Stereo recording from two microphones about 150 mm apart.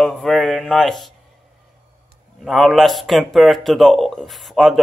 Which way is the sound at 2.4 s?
Centre (ahead or behind).